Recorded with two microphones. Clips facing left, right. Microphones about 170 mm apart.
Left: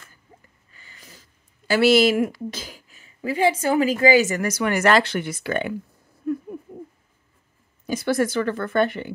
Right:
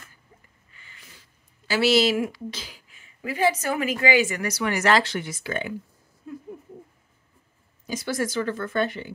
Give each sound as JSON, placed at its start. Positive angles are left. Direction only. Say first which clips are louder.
{"t": 0.7, "sound": "a woman's voice", "louder": "left 4 dB", "side_deg": 40}
{"t": 7.8, "sound": "a woman's voice", "louder": "left 6 dB", "side_deg": 60}